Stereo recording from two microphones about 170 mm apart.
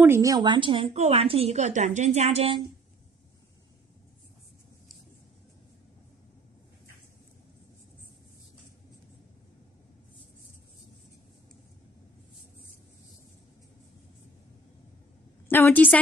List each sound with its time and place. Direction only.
0.0 s a woman's voice: 15° right (ahead or behind); by 2.6 s 35° right (ahead or behind)
15.4 s a woman's voice: 10° left (ahead or behind)